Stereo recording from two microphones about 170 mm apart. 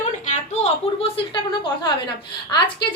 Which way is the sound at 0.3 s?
40° left (ahead or behind).